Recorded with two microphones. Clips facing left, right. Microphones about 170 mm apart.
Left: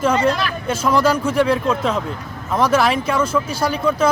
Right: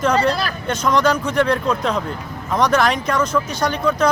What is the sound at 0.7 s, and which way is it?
Speech, 5° left (ahead or behind).